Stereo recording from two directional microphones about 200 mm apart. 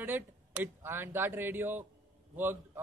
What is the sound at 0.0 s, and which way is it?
A woman's voice, 10° right (ahead or behind).